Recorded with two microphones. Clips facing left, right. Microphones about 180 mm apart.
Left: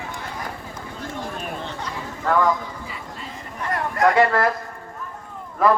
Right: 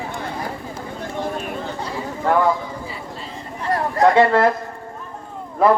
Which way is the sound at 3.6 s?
30° right (ahead or behind).